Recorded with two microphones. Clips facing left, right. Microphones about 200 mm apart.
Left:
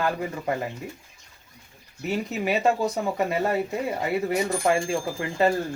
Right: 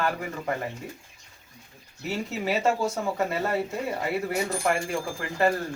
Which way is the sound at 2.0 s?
20° left (ahead or behind).